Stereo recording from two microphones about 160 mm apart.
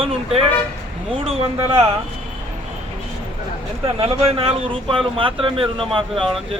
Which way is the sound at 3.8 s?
35° right (ahead or behind).